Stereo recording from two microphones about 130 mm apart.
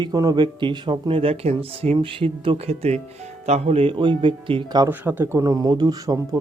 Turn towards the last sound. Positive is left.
turn(degrees=-25)  # may be behind; listen again after turning